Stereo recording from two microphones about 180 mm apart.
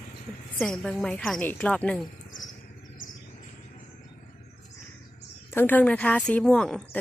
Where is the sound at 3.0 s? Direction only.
50° left (ahead or behind).